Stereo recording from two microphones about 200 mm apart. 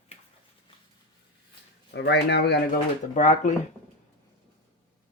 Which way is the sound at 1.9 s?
60° left (ahead or behind).